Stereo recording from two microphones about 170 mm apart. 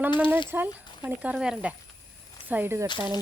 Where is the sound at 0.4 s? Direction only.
10° right (ahead or behind).